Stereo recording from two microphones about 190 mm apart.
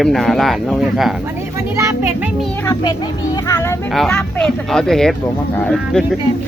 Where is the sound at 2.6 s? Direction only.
15° left (ahead or behind).